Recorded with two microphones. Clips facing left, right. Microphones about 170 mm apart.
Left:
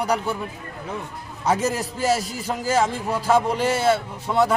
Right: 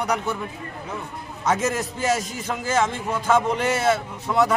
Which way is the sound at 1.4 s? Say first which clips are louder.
Left 1 dB; 30° left (ahead or behind).